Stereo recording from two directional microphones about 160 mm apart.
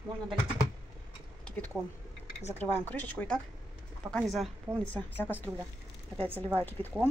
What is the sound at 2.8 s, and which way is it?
Speech, 10° left (ahead or behind).